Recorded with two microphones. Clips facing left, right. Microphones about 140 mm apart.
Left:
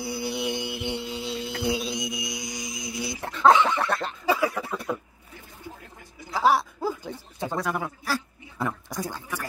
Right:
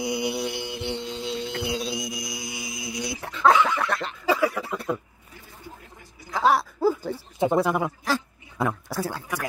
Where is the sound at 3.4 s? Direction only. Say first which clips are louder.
Left 1 dB; 25° left (ahead or behind).